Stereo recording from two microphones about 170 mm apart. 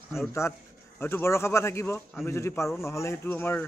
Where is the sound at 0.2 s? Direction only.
15° left (ahead or behind).